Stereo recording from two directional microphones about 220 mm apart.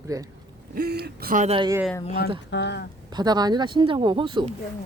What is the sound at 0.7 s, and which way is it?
Speech, 45° right (ahead or behind).